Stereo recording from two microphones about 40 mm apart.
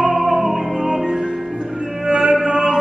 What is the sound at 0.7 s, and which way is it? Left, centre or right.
Music, centre.